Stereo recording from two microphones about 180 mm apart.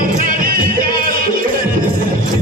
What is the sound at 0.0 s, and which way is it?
Music, 45° right (ahead or behind).